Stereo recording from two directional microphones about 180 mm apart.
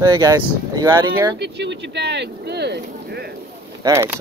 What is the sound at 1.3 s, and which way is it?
Speech, 70° right (ahead or behind).